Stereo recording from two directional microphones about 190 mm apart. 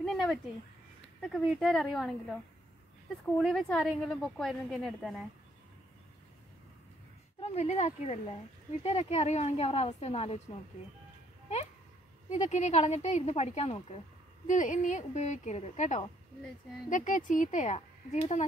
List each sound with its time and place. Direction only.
0.0 s a sound: centre (ahead or behind)
1.2 s a woman's voice: centre (ahead or behind)
7.3 s a woman's voice: 35° left (ahead or behind)
12.3 s a woman's voice: 40° left (ahead or behind)